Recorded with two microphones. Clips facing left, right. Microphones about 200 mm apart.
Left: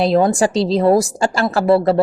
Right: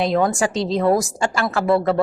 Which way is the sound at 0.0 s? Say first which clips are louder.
Left 4 dB; 35° left (ahead or behind).